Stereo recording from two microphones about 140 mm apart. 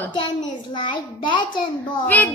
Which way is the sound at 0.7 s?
35° left (ahead or behind).